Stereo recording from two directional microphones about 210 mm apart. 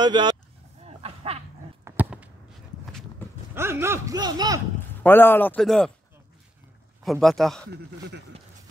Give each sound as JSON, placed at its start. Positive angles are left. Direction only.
{"t": 0.0, "sound": "speech", "side_deg": -20}
{"t": 0.8, "sound": "a sound", "side_deg": -30}
{"t": 1.9, "sound": "a sound", "side_deg": -5}
{"t": 2.9, "sound": "walk", "side_deg": 5}
{"t": 3.5, "sound": "speech", "side_deg": -10}
{"t": 5.0, "sound": "speech", "side_deg": 10}
{"t": 7.0, "sound": "a man's voice", "side_deg": 0}